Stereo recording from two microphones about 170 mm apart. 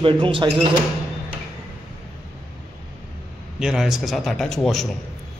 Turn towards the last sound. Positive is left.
turn(degrees=0)  # may be behind; listen again after turning